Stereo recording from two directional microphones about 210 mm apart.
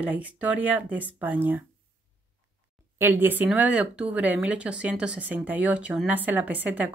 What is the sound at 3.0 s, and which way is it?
Speech, 10° right (ahead or behind).